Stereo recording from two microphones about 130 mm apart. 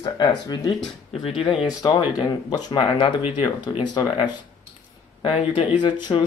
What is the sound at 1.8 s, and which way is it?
Speech, 35° left (ahead or behind).